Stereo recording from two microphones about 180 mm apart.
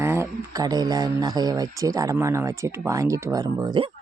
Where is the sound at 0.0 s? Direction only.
15° right (ahead or behind).